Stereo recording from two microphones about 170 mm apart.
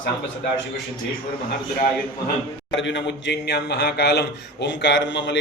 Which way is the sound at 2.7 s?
90° left.